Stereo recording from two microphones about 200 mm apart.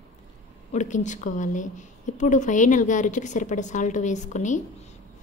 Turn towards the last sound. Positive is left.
turn(degrees=40)  # may be behind; listen again after turning